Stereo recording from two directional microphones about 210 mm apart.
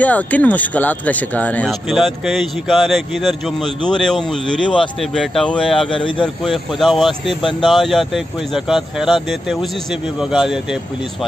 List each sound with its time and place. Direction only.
0.0 s speech: 5° left (ahead or behind)
5.9 s speech: 25° left (ahead or behind)
6.2 s speech: centre (ahead or behind)